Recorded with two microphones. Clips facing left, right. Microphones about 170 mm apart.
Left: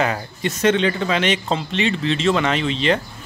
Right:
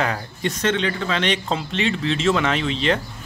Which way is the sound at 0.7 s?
20° left (ahead or behind).